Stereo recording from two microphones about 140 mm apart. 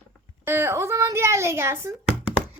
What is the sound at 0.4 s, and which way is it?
A child's voice, 15° right (ahead or behind).